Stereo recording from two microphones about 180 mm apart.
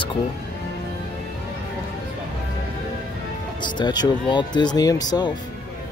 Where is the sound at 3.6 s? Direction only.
25° left (ahead or behind).